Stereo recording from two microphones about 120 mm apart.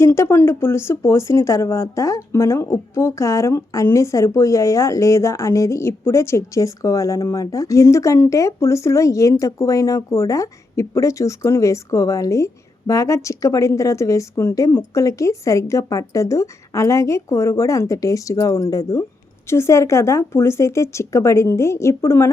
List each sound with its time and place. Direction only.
0.0 s speech: 20° left (ahead or behind)